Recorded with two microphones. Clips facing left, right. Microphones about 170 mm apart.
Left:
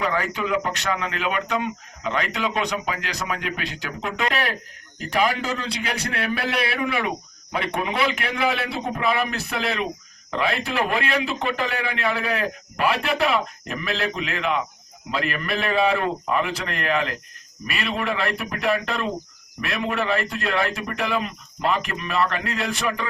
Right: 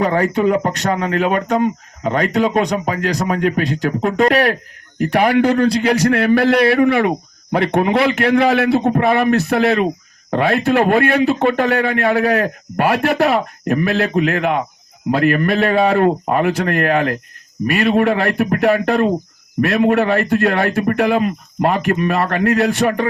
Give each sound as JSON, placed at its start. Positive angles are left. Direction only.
{"t": 0.0, "sound": "a man's voice", "side_deg": -40}